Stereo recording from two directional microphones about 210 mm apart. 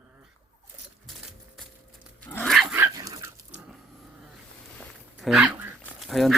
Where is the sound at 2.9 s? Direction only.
15° right (ahead or behind).